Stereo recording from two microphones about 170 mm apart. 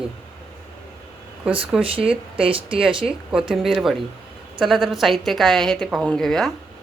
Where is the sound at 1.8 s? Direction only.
30° right (ahead or behind).